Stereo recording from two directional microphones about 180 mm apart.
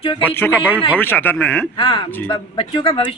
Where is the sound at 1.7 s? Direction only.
25° left (ahead or behind).